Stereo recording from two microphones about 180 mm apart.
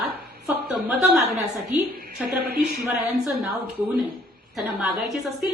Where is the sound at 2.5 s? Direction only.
60° right (ahead or behind).